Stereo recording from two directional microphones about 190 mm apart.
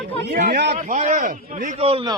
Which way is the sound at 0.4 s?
60° right (ahead or behind).